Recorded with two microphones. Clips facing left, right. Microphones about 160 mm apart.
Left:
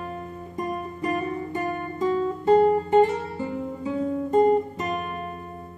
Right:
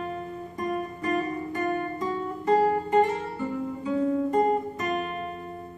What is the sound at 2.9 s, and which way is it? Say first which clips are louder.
Guitar: left 4 dB; 25° left (ahead or behind).